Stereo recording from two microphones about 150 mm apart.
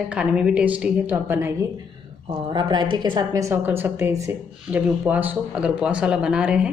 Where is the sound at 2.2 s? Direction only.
30° right (ahead or behind).